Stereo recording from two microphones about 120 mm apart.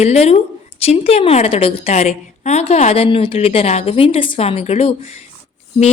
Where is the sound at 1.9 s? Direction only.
70° left (ahead or behind).